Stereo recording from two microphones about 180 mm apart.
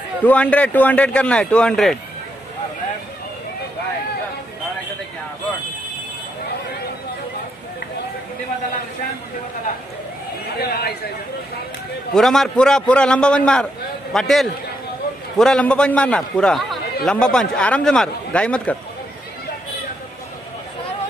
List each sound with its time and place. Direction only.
0.2 s a man's voice: 10° left (ahead or behind)
10.6 s speech: 60° left (ahead or behind)
12.1 s a man's voice: centre (ahead or behind)